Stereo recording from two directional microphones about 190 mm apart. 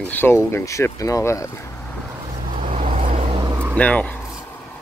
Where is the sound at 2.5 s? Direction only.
35° right (ahead or behind).